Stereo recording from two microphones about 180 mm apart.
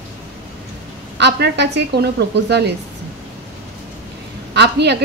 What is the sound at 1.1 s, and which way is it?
A woman's voice, 70° right (ahead or behind).